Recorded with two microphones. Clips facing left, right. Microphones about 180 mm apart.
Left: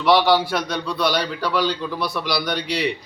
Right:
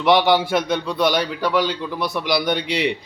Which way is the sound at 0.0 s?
20° right (ahead or behind).